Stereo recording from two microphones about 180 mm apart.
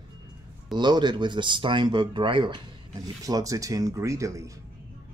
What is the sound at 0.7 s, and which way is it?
Speech, 25° right (ahead or behind).